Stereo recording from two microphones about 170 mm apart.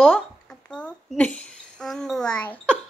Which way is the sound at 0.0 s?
5° left (ahead or behind).